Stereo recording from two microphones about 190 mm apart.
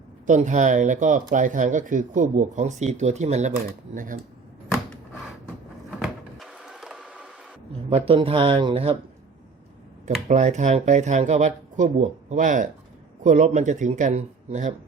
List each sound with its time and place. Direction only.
0.3 s speech: 40° right (ahead or behind)
6.0 s a sound: centre (ahead or behind)
7.9 s speech: 30° right (ahead or behind)
10.2 s speech: 40° right (ahead or behind)